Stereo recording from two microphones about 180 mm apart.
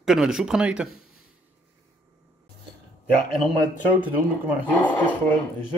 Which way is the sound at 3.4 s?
25° right (ahead or behind).